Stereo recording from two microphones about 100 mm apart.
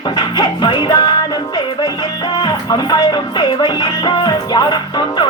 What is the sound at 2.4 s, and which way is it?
Music, 40° left (ahead or behind).